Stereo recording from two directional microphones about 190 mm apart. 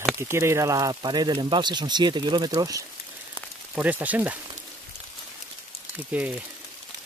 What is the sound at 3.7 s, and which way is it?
Speech, 10° right (ahead or behind).